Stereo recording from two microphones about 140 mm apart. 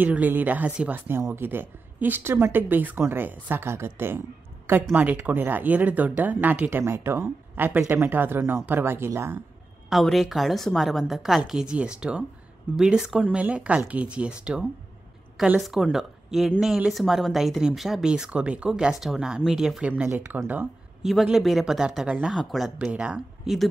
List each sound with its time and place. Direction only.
0.0 s a woman's voice: 10° right (ahead or behind)
9.8 s a woman's voice: centre (ahead or behind)
21.1 s speech: centre (ahead or behind)